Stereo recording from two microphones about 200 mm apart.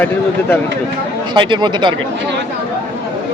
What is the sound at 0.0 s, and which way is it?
Speech, 10° left (ahead or behind).